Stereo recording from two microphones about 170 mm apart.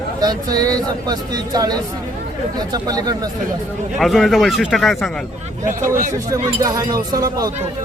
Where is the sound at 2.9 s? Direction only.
20° right (ahead or behind).